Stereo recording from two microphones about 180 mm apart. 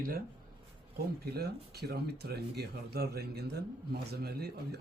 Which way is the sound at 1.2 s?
60° right (ahead or behind).